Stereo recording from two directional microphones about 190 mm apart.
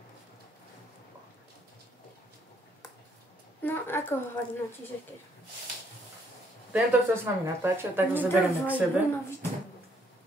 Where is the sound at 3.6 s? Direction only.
10° left (ahead or behind).